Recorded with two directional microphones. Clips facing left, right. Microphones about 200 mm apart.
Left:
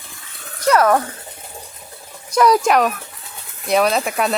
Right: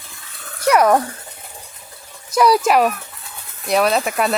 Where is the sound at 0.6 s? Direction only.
15° right (ahead or behind).